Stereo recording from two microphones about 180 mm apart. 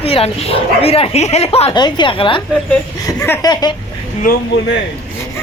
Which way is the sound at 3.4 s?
20° left (ahead or behind).